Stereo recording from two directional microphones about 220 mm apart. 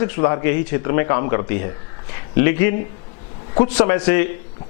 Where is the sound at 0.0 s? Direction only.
15° left (ahead or behind).